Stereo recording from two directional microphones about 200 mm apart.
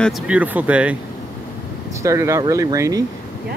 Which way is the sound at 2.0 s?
15° right (ahead or behind).